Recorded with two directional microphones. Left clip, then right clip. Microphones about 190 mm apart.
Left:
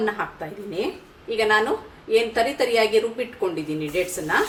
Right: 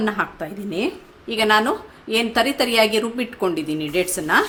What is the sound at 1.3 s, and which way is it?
Speech, 65° right (ahead or behind).